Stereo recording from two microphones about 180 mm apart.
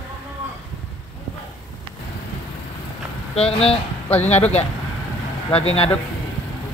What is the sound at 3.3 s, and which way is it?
Speech, 35° left (ahead or behind).